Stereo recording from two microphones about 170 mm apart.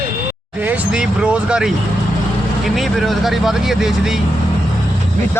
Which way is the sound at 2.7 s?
Centre (ahead or behind).